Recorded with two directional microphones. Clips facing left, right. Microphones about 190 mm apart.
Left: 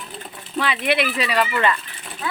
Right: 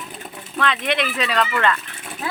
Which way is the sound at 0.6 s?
5° left (ahead or behind).